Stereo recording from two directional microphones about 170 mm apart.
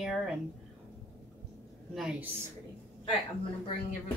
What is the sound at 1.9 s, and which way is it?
Speech, 5° right (ahead or behind).